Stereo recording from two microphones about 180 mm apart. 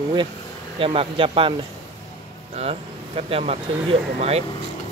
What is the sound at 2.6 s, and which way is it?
Speech, 35° right (ahead or behind).